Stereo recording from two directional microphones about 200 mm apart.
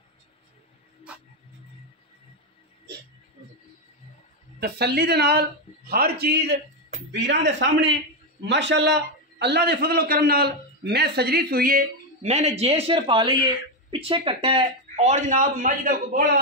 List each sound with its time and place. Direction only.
4.6 s a man's voice: 55° right (ahead or behind)
12.2 s speech: 35° right (ahead or behind)